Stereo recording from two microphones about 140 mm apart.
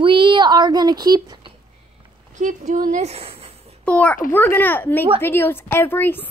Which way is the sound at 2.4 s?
65° right (ahead or behind).